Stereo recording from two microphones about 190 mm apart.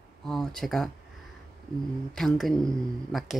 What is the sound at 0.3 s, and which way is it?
Speech, centre (ahead or behind).